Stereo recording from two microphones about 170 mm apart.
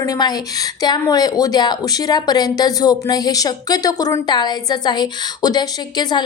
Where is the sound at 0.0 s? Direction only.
20° left (ahead or behind).